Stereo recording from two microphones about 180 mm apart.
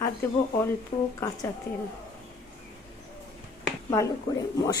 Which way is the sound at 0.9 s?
30° left (ahead or behind).